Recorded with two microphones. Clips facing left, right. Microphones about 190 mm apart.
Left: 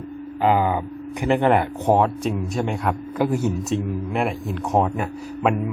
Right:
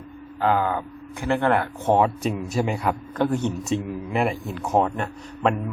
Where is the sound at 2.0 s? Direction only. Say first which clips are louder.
Left 1 dB; centre (ahead or behind).